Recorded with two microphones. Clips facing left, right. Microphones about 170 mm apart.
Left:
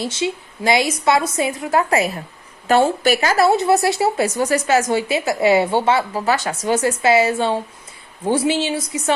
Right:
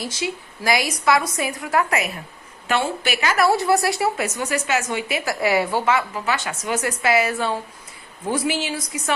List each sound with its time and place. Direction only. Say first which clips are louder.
0.0 s a woman's voice: left 5 dB; 25° left (ahead or behind)
3.4 s a woman's voice: left 2 dB; 25° left (ahead or behind)
4.4 s a woman's voice: left 6 dB; 35° left (ahead or behind)